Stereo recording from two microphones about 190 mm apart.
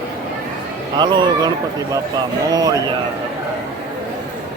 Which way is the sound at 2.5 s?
20° right (ahead or behind).